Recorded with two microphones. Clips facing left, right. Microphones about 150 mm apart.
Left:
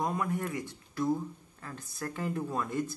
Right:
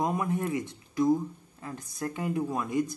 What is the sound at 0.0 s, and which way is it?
Speech, 20° right (ahead or behind).